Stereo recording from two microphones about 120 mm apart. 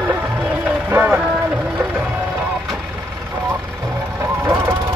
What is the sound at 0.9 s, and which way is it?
Music, 15° right (ahead or behind).